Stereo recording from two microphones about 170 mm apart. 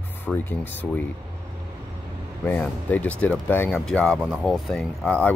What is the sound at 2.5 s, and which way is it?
Speech, 10° left (ahead or behind).